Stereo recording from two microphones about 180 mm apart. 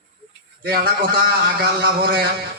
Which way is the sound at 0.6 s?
60° right (ahead or behind).